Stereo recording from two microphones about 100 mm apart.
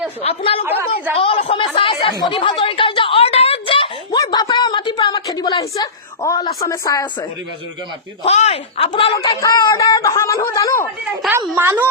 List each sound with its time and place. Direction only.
0.2 s speech: 85° left
0.6 s a woman's voice: 20° right (ahead or behind)
1.1 s a woman's voice: 75° left (ahead or behind)
1.7 s chatter: 60° left (ahead or behind)
2.3 s a sound: 55° left (ahead or behind)
4.2 s a sound: 45° left (ahead or behind)
8.2 s speech: 80° left
9.4 s a sound: 40° left (ahead or behind)
11.3 s a woman's voice: 20° right (ahead or behind)